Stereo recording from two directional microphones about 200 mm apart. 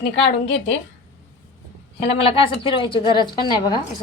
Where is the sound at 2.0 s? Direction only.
30° left (ahead or behind).